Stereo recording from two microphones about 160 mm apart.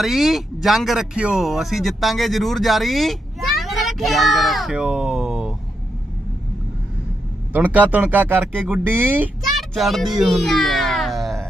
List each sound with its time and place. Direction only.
0.0 s speech: centre (ahead or behind)
7.5 s speech: 10° right (ahead or behind)
9.4 s music: centre (ahead or behind)